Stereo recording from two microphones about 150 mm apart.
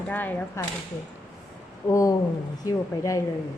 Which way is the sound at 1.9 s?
20° left (ahead or behind).